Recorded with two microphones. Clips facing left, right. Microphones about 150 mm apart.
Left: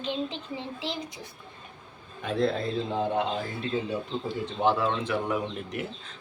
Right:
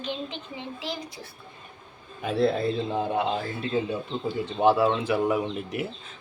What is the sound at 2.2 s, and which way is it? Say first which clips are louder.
Speech: right 3 dB; 5° right (ahead or behind).